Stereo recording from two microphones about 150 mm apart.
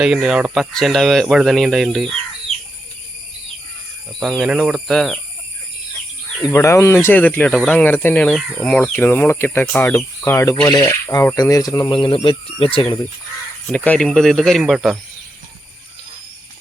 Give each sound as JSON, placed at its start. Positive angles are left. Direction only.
{"t": 0.0, "sound": "speech", "side_deg": -5}
{"t": 4.2, "sound": "speech", "side_deg": -5}
{"t": 6.4, "sound": "speech", "side_deg": 20}
{"t": 13.7, "sound": "speech", "side_deg": 10}